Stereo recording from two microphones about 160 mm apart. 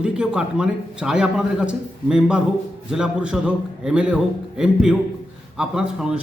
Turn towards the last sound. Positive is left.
turn(degrees=-5)  # may be behind; listen again after turning